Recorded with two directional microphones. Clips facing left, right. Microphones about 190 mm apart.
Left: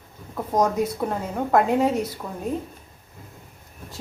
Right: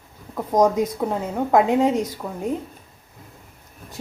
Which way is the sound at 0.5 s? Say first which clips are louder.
Right 4 dB; 20° right (ahead or behind).